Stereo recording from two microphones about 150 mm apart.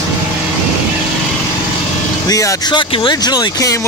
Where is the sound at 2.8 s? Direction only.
35° left (ahead or behind).